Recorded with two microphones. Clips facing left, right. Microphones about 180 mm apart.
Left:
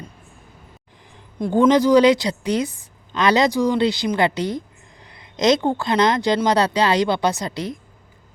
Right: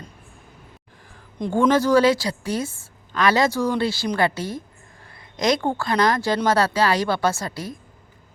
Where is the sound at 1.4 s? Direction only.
10° left (ahead or behind).